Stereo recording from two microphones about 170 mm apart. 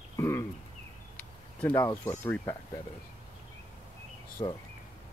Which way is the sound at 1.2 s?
10° left (ahead or behind).